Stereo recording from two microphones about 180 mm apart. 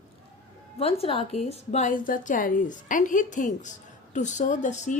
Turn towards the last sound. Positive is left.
turn(degrees=40)  # may be behind; listen again after turning